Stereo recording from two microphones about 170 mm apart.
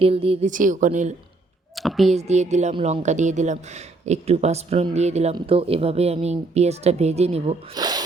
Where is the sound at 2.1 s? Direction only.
40° right (ahead or behind).